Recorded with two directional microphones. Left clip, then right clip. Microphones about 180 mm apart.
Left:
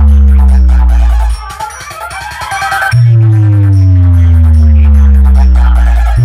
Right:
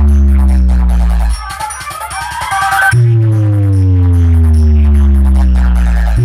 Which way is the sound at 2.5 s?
45° right (ahead or behind).